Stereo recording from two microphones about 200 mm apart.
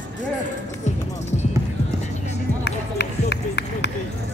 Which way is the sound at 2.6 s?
60° left (ahead or behind).